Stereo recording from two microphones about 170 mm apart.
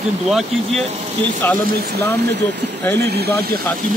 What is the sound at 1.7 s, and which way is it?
Speech, 65° right (ahead or behind).